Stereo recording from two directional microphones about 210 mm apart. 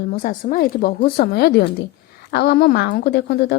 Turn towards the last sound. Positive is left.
turn(degrees=50)  # may be behind; listen again after turning